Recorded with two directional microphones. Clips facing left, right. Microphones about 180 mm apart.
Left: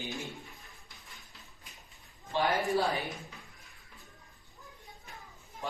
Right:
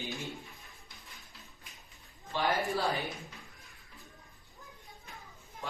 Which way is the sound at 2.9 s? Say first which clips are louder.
Even; centre (ahead or behind).